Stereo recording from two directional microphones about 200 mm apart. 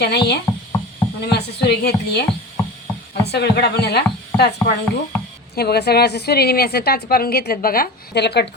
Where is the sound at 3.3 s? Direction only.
55° left (ahead or behind).